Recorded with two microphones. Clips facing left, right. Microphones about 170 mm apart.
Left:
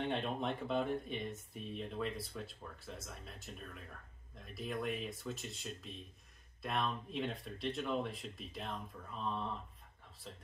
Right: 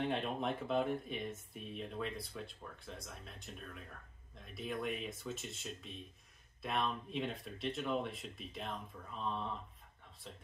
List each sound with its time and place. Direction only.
0.0 s speech: centre (ahead or behind)